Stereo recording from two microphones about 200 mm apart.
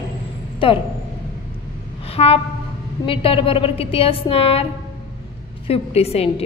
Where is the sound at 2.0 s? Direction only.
30° left (ahead or behind).